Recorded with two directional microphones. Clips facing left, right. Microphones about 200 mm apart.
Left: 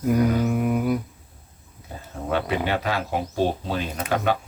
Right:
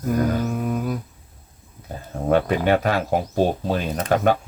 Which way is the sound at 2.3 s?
50° right (ahead or behind).